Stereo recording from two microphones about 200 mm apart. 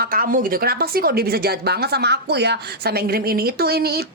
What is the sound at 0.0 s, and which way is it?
A woman's voice, 45° right (ahead or behind).